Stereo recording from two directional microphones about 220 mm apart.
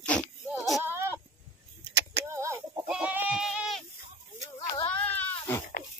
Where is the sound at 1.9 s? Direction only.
50° right (ahead or behind).